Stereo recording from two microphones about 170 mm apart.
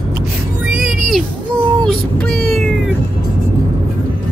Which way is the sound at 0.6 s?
5° right (ahead or behind).